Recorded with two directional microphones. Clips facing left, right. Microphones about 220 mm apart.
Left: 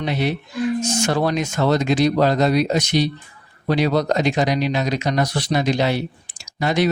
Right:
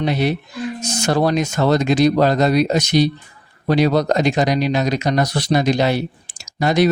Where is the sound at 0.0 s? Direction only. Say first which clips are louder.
Right 3 dB; 40° right (ahead or behind).